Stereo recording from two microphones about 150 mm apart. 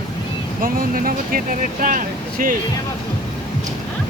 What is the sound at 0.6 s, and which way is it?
Speech, 70° right (ahead or behind).